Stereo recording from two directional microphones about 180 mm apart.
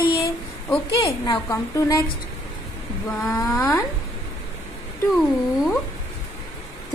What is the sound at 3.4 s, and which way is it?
Speech, 15° left (ahead or behind).